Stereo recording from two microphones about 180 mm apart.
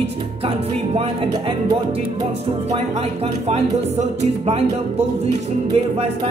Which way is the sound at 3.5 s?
40° right (ahead or behind).